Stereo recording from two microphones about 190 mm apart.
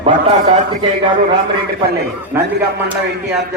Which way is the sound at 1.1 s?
25° right (ahead or behind).